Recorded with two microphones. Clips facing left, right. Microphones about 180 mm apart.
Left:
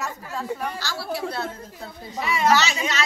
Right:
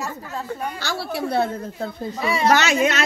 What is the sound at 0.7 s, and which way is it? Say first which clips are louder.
A woman's voice: right 3 dB; 60° right (ahead or behind).